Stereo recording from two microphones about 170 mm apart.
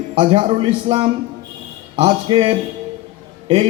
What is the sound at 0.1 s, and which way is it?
A man's voice, 30° right (ahead or behind).